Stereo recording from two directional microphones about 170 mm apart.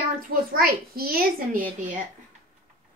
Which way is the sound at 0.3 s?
60° right (ahead or behind).